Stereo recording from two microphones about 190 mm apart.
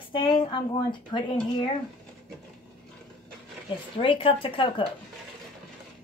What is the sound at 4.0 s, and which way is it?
Speech, 25° left (ahead or behind).